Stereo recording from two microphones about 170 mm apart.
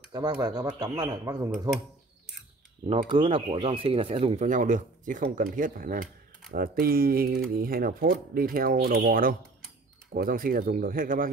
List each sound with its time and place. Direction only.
0.4 s speech: 20° right (ahead or behind)
2.9 s speech: 35° right (ahead or behind); by 11.2 s 55° right (ahead or behind)